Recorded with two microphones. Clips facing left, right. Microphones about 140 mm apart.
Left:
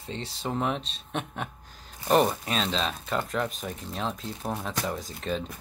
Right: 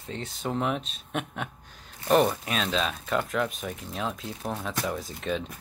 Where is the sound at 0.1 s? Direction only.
30° left (ahead or behind).